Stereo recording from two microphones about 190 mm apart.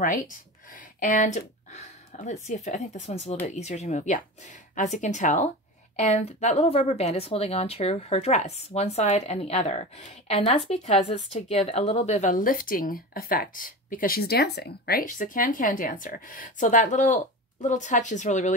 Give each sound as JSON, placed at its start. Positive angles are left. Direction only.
{"t": 0.0, "sound": "a woman's voice", "side_deg": 45}